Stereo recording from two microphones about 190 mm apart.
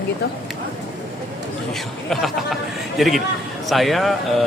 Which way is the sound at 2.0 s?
Centre (ahead or behind).